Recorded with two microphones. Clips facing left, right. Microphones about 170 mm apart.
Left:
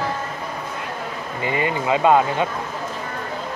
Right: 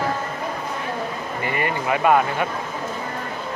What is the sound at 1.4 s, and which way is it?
Speech, 20° left (ahead or behind).